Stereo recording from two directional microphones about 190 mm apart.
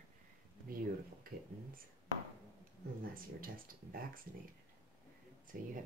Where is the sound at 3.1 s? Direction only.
50° right (ahead or behind).